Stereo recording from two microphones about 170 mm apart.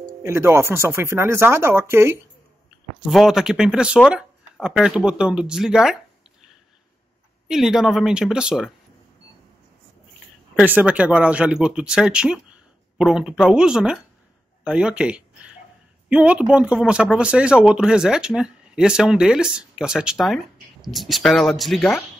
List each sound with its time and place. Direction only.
0.2 s speech: 15° right (ahead or behind)
3.1 s speech: centre (ahead or behind)
7.4 s speech: 5° right (ahead or behind)
10.6 s speech: 10° right (ahead or behind)